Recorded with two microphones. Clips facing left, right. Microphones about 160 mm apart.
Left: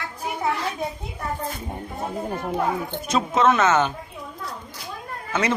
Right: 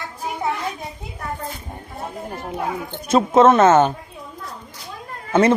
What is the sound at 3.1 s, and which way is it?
Speech, 45° right (ahead or behind).